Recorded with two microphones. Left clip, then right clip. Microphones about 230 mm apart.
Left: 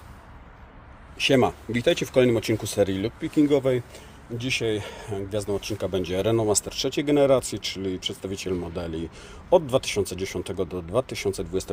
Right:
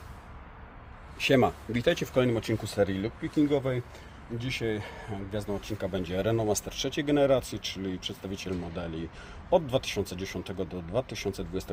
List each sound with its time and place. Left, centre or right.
1.2 s speech: centre; by 11.7 s left